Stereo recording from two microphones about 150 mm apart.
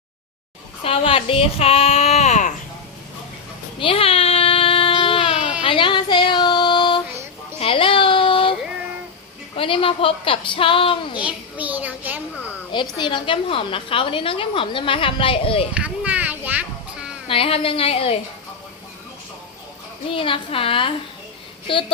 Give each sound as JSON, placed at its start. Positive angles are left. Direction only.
{"t": 0.9, "sound": "speech", "side_deg": 35}
{"t": 3.8, "sound": "a sound", "side_deg": 35}
{"t": 5.6, "sound": "child singing", "side_deg": 35}
{"t": 7.6, "sound": "baby cry", "side_deg": 35}
{"t": 9.6, "sound": "a woman's voice", "side_deg": 35}
{"t": 11.2, "sound": "child singing", "side_deg": -10}
{"t": 13.0, "sound": "a woman's voice", "side_deg": 30}
{"t": 15.7, "sound": "music", "side_deg": -10}
{"t": 17.2, "sound": "a woman's voice", "side_deg": 40}
{"t": 20.1, "sound": "a woman's voice", "side_deg": 35}